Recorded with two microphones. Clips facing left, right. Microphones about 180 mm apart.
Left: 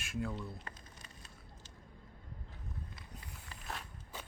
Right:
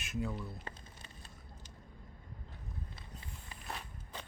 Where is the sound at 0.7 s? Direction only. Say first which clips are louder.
Right 2 dB; 30° right (ahead or behind).